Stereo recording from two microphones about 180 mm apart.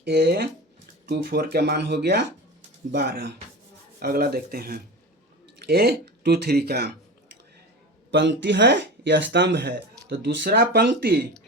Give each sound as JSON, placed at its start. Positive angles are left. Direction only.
{"t": 0.0, "sound": "speech", "side_deg": -65}
{"t": 8.1, "sound": "speech", "side_deg": -75}